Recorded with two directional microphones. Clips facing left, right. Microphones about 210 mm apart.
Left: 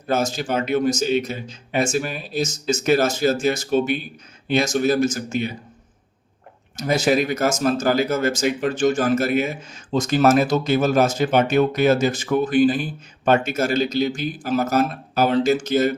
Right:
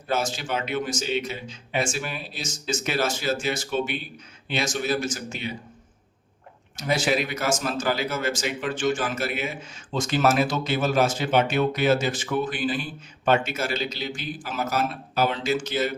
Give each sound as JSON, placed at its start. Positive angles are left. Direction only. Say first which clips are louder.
{"t": 0.1, "sound": "speech", "louder": "left 5 dB", "side_deg": 40}
{"t": 6.7, "sound": "speech", "louder": "left 5 dB", "side_deg": 40}